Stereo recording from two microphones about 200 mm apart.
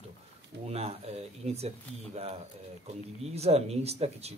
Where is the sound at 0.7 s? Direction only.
30° right (ahead or behind).